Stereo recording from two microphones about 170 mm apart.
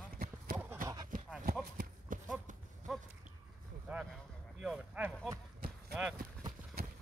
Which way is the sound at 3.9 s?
10° right (ahead or behind).